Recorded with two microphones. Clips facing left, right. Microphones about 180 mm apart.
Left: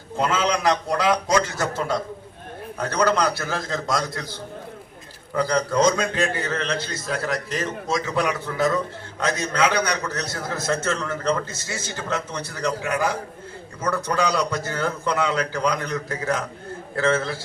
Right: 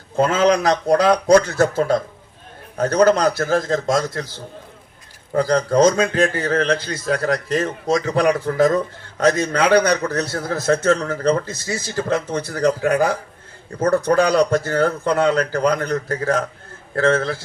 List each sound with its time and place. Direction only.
0.2 s a man's voice: 45° right (ahead or behind)
5.3 s a man's voice: 45° right (ahead or behind)
9.2 s a man's voice: 55° right (ahead or behind)
10.7 s a man's voice: 45° right (ahead or behind)
12.3 s a man's voice: 60° right (ahead or behind)
12.6 s a man's voice: 45° right (ahead or behind)